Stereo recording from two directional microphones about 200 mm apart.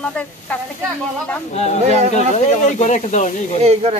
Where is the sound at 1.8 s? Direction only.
35° right (ahead or behind).